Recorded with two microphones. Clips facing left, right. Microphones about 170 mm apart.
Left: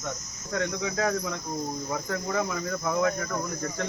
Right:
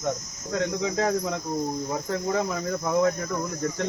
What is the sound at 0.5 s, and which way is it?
Cricket, 25° right (ahead or behind).